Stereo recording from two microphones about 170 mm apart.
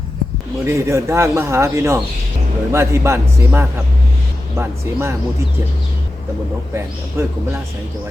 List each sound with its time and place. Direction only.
0.6 s a man's voice: 15° right (ahead or behind)
7.2 s a man's voice: 15° right (ahead or behind)